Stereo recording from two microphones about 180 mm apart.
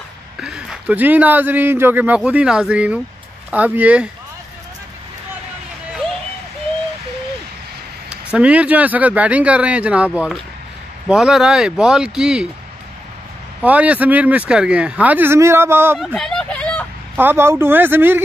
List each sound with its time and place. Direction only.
0.4 s a man's voice: 5° right (ahead or behind)
8.1 s a man's voice: 5° right (ahead or behind)
13.6 s a man's voice: 5° right (ahead or behind)
16.0 s hubbub: 5° left (ahead or behind)
17.1 s a man's voice: 10° right (ahead or behind)